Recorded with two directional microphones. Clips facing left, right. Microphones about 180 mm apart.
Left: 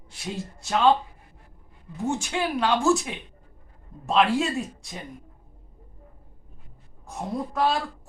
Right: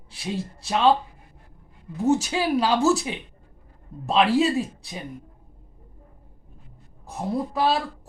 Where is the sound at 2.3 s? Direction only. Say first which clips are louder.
Right 2 dB; 5° right (ahead or behind).